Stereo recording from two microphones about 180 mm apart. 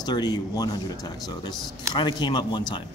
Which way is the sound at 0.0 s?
25° left (ahead or behind).